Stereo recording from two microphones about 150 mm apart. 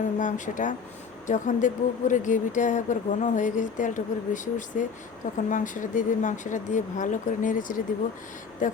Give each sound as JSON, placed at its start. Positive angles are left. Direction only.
{"t": 0.2, "sound": "speech", "side_deg": 55}